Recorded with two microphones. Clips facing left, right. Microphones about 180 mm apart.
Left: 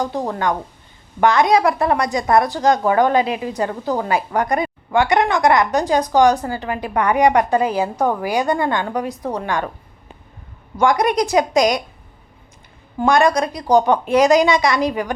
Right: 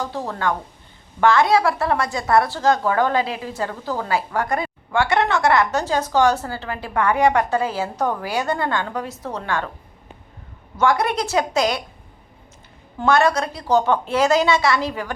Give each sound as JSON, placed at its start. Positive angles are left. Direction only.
{"t": 0.0, "sound": "a woman's voice", "side_deg": 15}
{"t": 10.8, "sound": "a woman's voice", "side_deg": 15}
{"t": 13.0, "sound": "a woman's voice", "side_deg": 15}